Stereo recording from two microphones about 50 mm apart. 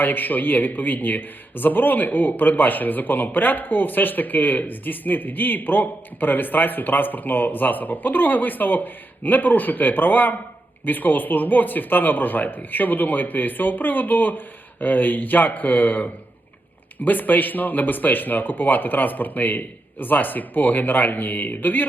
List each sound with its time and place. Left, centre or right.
0.0 s speech: left